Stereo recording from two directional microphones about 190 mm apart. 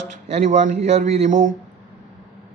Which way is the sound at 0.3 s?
40° right (ahead or behind).